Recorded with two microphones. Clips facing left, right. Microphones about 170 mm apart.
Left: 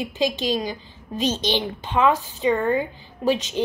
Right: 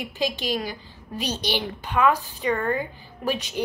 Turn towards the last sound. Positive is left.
turn(degrees=20)  # may be behind; listen again after turning